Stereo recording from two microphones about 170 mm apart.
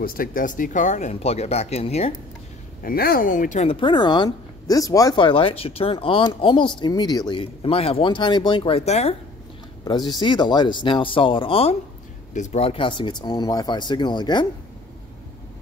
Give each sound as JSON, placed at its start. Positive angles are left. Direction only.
{"t": 0.0, "sound": "speech", "side_deg": 55}
{"t": 2.8, "sound": "speech", "side_deg": 60}
{"t": 3.6, "sound": "speech", "side_deg": 25}
{"t": 9.8, "sound": "speech", "side_deg": 25}